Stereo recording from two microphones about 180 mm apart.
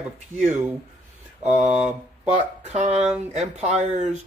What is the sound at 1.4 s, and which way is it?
Speech, 40° right (ahead or behind).